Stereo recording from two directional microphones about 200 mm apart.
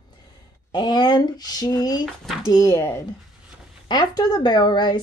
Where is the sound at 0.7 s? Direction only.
20° left (ahead or behind).